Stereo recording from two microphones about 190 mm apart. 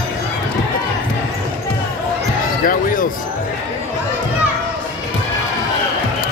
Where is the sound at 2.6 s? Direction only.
45° left (ahead or behind).